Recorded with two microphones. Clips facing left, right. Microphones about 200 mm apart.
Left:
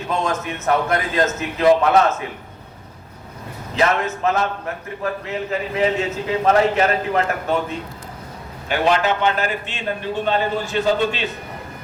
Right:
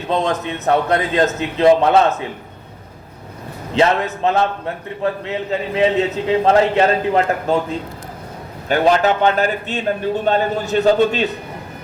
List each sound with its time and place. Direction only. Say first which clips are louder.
0.1 s a man's voice: right 4 dB; 35° right (ahead or behind)
3.8 s a man's voice: right 3 dB; 30° right (ahead or behind)
8.7 s a man's voice: right 4 dB; 40° right (ahead or behind)